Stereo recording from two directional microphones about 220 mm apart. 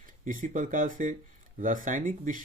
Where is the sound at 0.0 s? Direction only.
35° right (ahead or behind).